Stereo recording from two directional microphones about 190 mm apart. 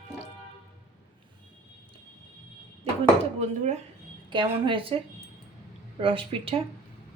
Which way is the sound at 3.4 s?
35° right (ahead or behind).